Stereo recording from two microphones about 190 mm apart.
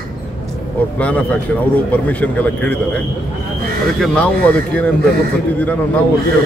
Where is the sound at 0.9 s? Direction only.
5° left (ahead or behind).